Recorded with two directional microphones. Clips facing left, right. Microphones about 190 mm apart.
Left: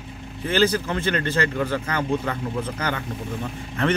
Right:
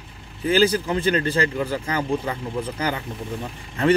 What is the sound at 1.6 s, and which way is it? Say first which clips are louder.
Speech: even; 10° right (ahead or behind).